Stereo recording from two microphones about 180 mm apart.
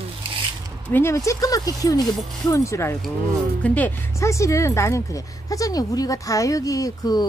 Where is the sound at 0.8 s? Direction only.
10° left (ahead or behind).